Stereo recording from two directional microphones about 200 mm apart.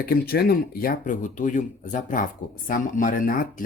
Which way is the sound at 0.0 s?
50° left (ahead or behind).